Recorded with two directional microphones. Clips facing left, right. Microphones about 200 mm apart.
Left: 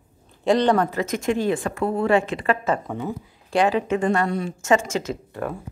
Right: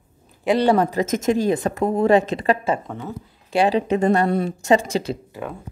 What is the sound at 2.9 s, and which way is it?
Speech, 15° left (ahead or behind).